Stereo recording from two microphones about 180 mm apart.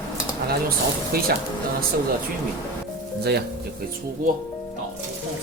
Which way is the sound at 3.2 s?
65° right (ahead or behind).